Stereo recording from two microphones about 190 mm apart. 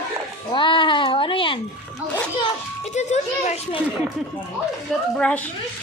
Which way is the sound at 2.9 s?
40° left (ahead or behind).